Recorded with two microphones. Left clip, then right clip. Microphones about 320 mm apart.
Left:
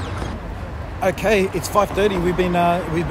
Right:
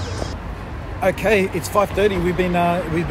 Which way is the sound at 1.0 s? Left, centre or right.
Centre.